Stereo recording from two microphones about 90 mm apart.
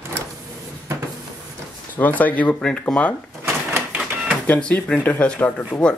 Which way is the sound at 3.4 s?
25° right (ahead or behind).